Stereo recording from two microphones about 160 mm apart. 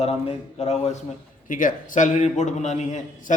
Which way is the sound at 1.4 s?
55° left (ahead or behind).